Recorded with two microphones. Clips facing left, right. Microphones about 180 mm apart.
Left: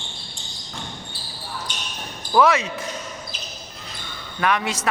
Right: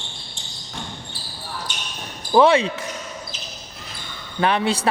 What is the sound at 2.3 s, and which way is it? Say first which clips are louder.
Speech: right 3 dB; 30° right (ahead or behind).